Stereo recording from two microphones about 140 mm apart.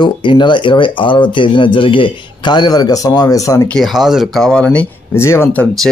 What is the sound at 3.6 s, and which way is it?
Speech, 5° left (ahead or behind).